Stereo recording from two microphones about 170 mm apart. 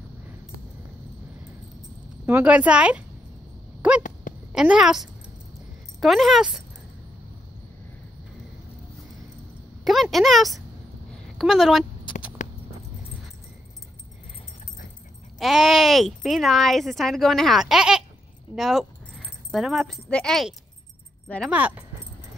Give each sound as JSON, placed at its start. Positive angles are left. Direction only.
{"t": 2.2, "sound": "a woman's voice", "side_deg": -10}
{"t": 9.8, "sound": "a woman's voice", "side_deg": 0}
{"t": 12.4, "sound": "a sound", "side_deg": 45}
{"t": 15.3, "sound": "speech", "side_deg": 0}
{"t": 21.5, "sound": "speech", "side_deg": -10}